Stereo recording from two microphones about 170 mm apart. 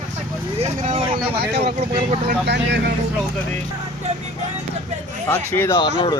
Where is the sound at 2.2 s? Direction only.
85° right.